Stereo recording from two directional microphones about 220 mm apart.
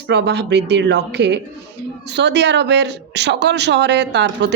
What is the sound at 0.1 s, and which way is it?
A woman's voice, 50° right (ahead or behind).